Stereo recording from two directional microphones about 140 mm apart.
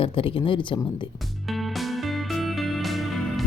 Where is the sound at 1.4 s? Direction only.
Centre (ahead or behind).